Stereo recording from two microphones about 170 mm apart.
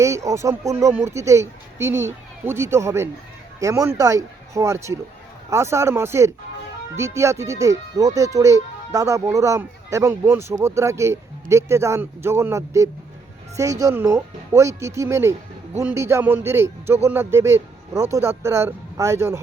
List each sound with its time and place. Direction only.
0.0 s speech: 20° right (ahead or behind)